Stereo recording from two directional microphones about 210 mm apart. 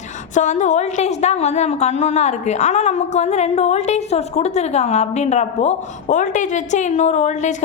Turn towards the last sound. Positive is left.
turn(degrees=35)  # may be behind; listen again after turning